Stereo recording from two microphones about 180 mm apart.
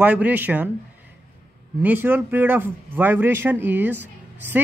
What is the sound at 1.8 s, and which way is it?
A man's voice, 10° right (ahead or behind).